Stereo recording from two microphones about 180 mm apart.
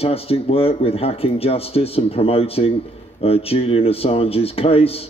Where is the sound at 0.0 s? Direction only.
35° left (ahead or behind).